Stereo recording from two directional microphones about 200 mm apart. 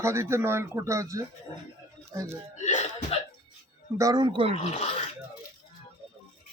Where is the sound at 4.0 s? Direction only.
20° right (ahead or behind).